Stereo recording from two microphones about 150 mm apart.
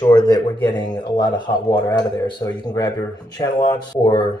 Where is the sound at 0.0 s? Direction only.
25° left (ahead or behind).